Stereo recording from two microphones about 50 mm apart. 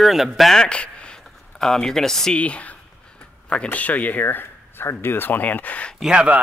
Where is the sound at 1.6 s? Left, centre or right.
Centre.